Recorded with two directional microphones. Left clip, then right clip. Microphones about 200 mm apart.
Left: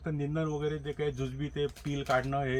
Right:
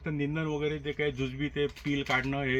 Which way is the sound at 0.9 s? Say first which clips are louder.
Right 3 dB; 15° left (ahead or behind).